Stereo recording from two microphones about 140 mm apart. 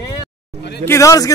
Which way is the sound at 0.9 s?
20° left (ahead or behind).